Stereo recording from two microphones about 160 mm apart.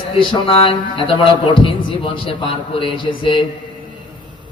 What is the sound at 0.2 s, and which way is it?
Speech, 35° left (ahead or behind).